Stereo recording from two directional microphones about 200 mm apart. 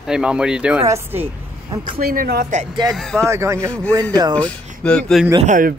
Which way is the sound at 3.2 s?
15° right (ahead or behind).